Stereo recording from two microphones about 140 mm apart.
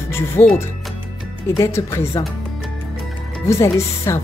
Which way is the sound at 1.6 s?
20° left (ahead or behind).